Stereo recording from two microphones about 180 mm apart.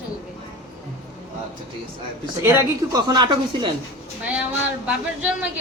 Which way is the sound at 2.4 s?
15° right (ahead or behind).